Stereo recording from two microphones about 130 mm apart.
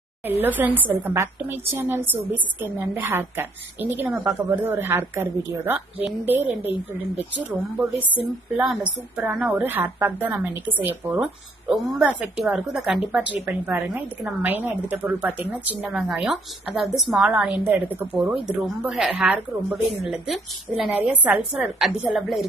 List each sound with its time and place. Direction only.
0.3 s a woman's voice: 15° right (ahead or behind)
9.1 s a woman's voice: 10° right (ahead or behind)
11.7 s a woman's voice: 5° right (ahead or behind)